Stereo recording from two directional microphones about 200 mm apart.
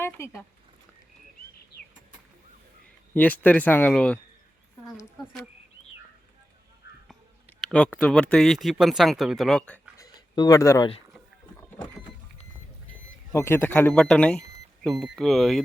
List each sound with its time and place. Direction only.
0.0 s speech: 10° left (ahead or behind)
3.2 s speech: 10° left (ahead or behind)
7.6 s a sound: 5° left (ahead or behind)
8.0 s speech: 5° left (ahead or behind)
10.0 s a sound: 20° left (ahead or behind)
13.3 s speech: 10° left (ahead or behind)